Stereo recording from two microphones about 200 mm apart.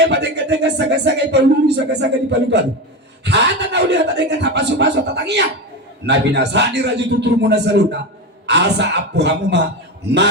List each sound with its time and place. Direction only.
0.0 s speech: 60° right (ahead or behind)